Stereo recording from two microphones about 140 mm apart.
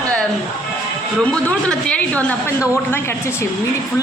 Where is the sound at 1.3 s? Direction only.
10° left (ahead or behind).